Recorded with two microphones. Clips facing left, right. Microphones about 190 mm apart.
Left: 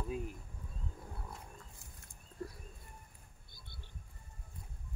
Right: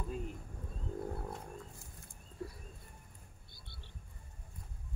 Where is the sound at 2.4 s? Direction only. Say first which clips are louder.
Even; 5° right (ahead or behind).